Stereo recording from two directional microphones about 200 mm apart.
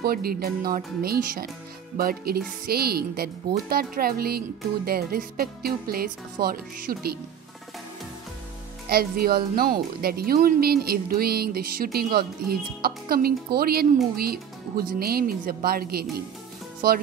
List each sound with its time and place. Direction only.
0.0 s speech: 50° right (ahead or behind)
8.8 s speech: 50° right (ahead or behind)